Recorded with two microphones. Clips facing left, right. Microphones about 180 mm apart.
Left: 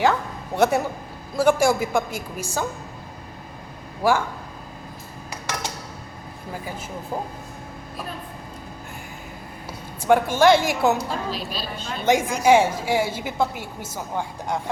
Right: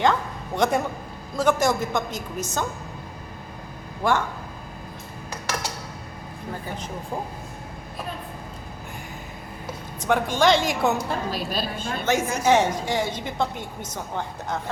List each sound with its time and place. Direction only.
0.0 s a woman's voice: 5° left (ahead or behind)
4.0 s a woman's voice: 5° left (ahead or behind)
10.0 s a woman's voice: 10° left (ahead or behind)
11.3 s a woman's voice: 50° right (ahead or behind)
12.0 s a woman's voice: 15° left (ahead or behind)